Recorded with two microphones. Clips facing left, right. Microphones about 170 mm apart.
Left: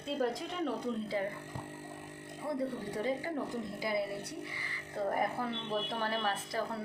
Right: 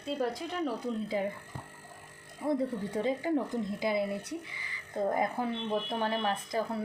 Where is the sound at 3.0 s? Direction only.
25° right (ahead or behind).